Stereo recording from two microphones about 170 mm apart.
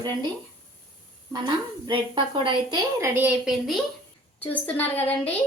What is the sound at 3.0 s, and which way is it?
Speech, 10° right (ahead or behind).